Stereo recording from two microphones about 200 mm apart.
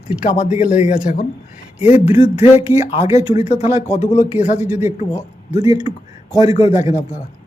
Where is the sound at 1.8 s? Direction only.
30° left (ahead or behind).